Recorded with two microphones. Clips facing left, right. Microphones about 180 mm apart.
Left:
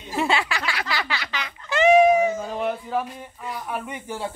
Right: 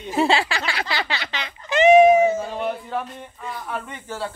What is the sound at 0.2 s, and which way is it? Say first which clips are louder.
Music: right 4 dB; 30° right (ahead or behind).